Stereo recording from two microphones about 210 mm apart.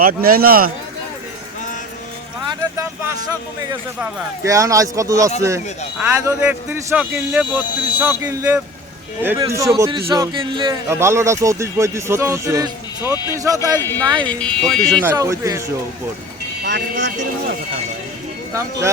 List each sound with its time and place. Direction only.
0.0 s a man's voice: 45° right (ahead or behind)
3.7 s speech: 15° right (ahead or behind)
10.8 s speech: 10° right (ahead or behind)
13.7 s speech: 10° left (ahead or behind)
14.0 s speech: 20° right (ahead or behind)
14.3 s speech: 5° left (ahead or behind)
15.0 s speech: 15° right (ahead or behind)
16.6 s speech: 55° right (ahead or behind)